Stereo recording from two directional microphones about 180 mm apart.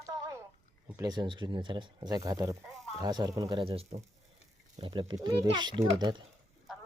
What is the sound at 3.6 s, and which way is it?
Speech, 30° right (ahead or behind).